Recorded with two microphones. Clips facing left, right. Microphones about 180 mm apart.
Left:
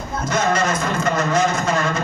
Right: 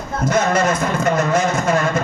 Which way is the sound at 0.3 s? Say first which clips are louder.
Right 3 dB; 60° right (ahead or behind).